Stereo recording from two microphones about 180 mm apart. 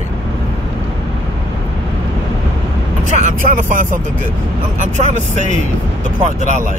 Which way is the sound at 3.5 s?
45° right (ahead or behind).